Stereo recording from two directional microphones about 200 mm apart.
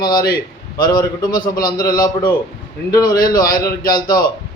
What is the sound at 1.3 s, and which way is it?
Speech, 45° left (ahead or behind).